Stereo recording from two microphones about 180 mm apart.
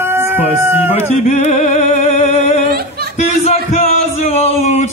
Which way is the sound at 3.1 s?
35° left (ahead or behind).